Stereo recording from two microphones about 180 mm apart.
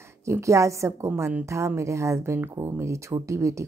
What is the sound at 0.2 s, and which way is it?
A woman's voice, 15° right (ahead or behind).